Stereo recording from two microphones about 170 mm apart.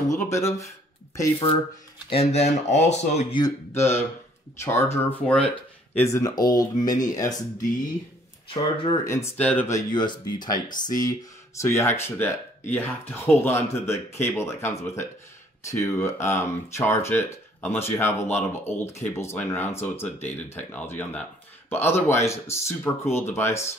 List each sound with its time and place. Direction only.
0.1 s speech: 15° left (ahead or behind)
2.0 s speech: 35° left (ahead or behind)
3.3 s speech: 20° left (ahead or behind)
9.1 s speech: 10° left (ahead or behind)